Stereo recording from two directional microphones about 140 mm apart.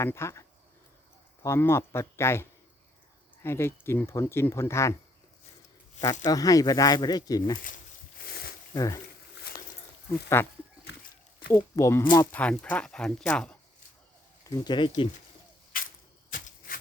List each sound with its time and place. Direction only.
0.0 s speech: 20° left (ahead or behind)
6.2 s speech: 25° left (ahead or behind)
8.2 s a sound: 90° left
8.7 s speech: 25° left (ahead or behind)
10.1 s speech: 15° left (ahead or behind)
11.5 s speech: 20° left (ahead or behind)
14.4 s speech: 25° left (ahead or behind)